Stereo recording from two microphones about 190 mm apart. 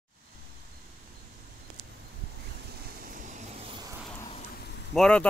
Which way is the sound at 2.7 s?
55° right (ahead or behind).